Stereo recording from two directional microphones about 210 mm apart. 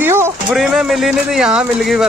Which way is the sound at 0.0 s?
10° right (ahead or behind).